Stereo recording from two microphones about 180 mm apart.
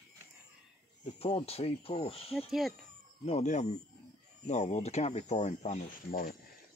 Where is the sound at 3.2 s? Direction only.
40° left (ahead or behind).